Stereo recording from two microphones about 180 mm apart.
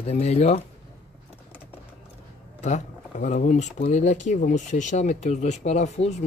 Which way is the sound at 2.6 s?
40° left (ahead or behind).